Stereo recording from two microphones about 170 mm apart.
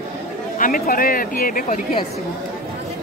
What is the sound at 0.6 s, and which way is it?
Speech, 55° left (ahead or behind).